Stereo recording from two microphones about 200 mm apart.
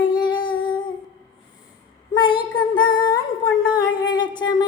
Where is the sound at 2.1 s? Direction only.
25° left (ahead or behind).